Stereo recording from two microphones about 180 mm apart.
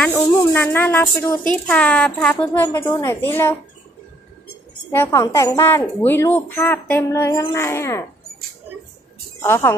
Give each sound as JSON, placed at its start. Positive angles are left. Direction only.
{"t": 0.0, "sound": "speech", "side_deg": 10}
{"t": 4.9, "sound": "speech", "side_deg": 15}
{"t": 9.4, "sound": "speech", "side_deg": 15}